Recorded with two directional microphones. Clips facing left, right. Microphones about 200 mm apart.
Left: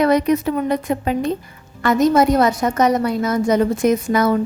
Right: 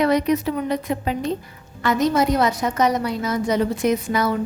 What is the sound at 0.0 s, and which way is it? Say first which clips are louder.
A woman's voice: left 3 dB; 45° left (ahead or behind).